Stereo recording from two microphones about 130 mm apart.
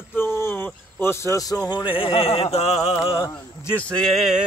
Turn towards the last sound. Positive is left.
turn(degrees=0)  # may be behind; listen again after turning